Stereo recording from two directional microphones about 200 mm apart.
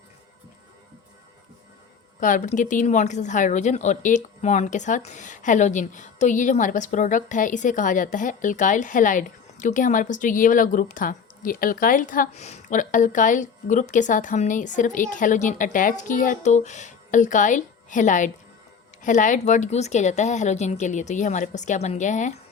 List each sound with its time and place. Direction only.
2.2 s a woman's voice: 40° left (ahead or behind)